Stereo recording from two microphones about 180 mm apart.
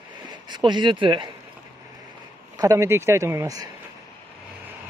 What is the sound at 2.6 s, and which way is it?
Speech, 15° right (ahead or behind).